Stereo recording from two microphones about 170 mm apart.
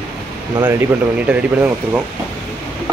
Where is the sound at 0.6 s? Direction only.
20° right (ahead or behind).